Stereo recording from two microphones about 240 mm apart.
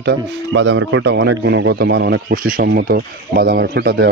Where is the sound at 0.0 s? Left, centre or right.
Right.